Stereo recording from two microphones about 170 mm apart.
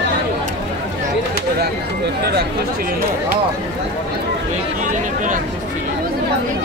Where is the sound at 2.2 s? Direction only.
75° right (ahead or behind).